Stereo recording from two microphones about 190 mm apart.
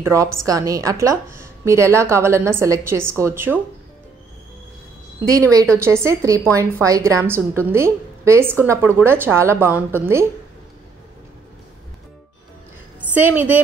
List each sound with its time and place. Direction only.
0.0 s a woman's voice: 15° right (ahead or behind)
5.8 s a woman's voice: 15° right (ahead or behind)
13.1 s a woman's voice: 10° right (ahead or behind)